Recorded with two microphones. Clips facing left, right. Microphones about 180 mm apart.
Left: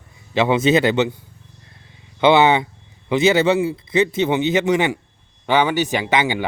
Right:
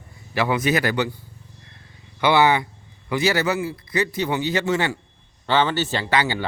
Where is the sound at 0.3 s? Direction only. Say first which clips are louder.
Left 5 dB; 25° left (ahead or behind).